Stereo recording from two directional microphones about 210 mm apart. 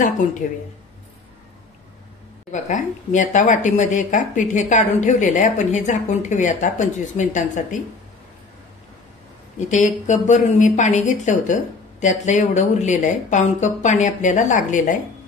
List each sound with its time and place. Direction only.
0.0 s a woman's voice: 35° left (ahead or behind)
2.5 s a woman's voice: 35° left (ahead or behind)
9.7 s a woman's voice: 35° left (ahead or behind)